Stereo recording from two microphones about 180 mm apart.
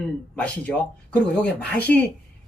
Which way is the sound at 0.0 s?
5° left (ahead or behind).